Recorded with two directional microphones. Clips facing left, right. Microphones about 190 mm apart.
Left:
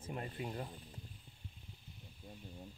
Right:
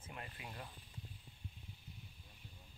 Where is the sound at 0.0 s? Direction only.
35° left (ahead or behind).